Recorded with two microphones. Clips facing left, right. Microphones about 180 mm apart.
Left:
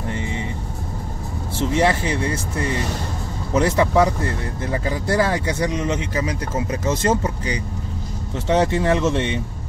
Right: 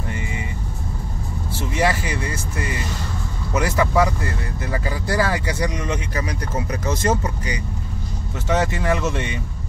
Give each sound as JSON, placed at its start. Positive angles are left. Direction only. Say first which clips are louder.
{"t": 1.6, "sound": "speech", "louder": "left 3 dB", "side_deg": 25}
{"t": 3.5, "sound": "speech", "louder": "left 2 dB", "side_deg": 25}